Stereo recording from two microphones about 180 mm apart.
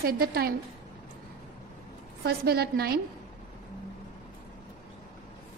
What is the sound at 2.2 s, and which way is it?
Speech, 60° right (ahead or behind).